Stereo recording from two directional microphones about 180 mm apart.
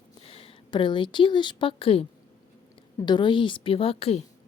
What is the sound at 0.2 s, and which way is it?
A woman's voice, 30° left (ahead or behind).